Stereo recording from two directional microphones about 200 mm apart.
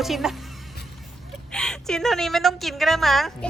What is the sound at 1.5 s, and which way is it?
Speech, 5° left (ahead or behind).